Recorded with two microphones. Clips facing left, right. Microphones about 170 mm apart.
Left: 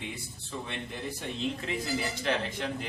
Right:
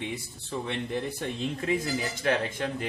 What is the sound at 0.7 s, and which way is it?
Speech, 60° right (ahead or behind).